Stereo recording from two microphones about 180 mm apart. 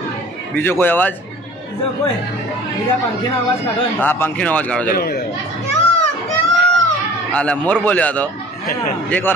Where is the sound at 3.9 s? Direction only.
10° left (ahead or behind).